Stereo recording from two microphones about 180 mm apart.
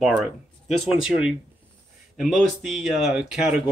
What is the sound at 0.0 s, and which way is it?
Speech, centre (ahead or behind).